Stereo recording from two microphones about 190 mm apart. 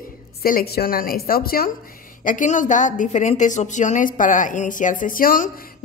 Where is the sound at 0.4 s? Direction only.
50° left (ahead or behind).